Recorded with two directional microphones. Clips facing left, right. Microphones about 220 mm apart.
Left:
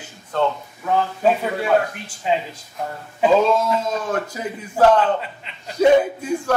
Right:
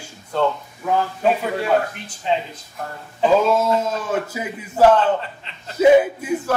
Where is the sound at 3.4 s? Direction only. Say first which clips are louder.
Right 1 dB; 5° right (ahead or behind).